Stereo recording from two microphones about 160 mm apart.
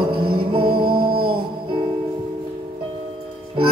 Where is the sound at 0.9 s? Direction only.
70° right (ahead or behind).